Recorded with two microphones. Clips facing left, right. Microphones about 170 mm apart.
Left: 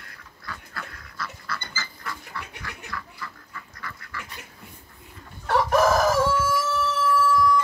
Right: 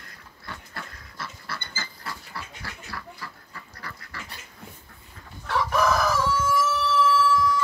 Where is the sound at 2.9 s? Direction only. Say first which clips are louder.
Left 1 dB; 35° right (ahead or behind).